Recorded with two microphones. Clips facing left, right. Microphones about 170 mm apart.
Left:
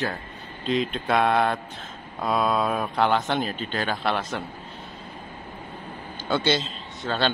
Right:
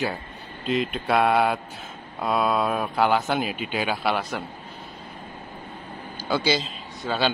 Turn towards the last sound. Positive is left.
turn(degrees=-5)  # may be behind; listen again after turning